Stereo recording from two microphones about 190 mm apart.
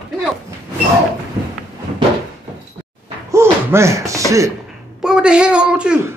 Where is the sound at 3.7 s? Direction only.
15° right (ahead or behind).